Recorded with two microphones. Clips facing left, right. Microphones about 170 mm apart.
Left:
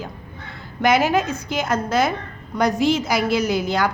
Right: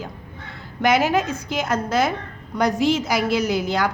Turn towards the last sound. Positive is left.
turn(degrees=50)  # may be behind; listen again after turning